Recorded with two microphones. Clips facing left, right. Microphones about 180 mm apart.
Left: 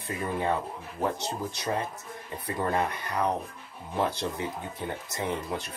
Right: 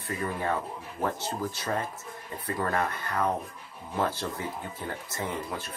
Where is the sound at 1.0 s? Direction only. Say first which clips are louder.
Even; 15° left (ahead or behind).